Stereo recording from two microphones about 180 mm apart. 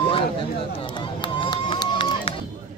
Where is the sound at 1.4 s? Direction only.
30° left (ahead or behind).